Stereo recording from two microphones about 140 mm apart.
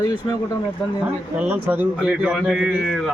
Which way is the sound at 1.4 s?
15° right (ahead or behind).